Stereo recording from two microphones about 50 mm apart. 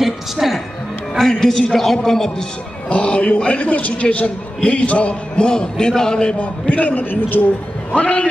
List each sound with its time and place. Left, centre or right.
0.0 s a woman's voice: centre
1.1 s a man's voice: centre
2.9 s a man's voice: left
6.7 s a man's voice: left
7.9 s a man's voice: left